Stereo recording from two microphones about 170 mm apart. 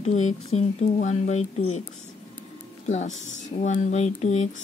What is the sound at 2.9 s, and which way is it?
Speech, 45° left (ahead or behind).